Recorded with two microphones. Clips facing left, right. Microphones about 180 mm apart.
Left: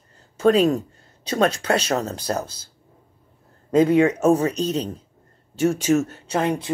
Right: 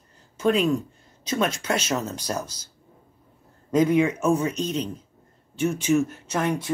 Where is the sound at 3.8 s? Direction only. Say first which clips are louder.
Left 4 dB; 35° left (ahead or behind).